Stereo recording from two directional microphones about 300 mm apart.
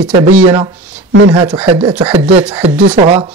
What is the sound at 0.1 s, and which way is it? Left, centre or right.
Speech, right.